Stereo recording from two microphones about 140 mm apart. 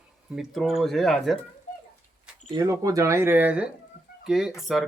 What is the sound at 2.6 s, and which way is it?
Speech, 20° right (ahead or behind).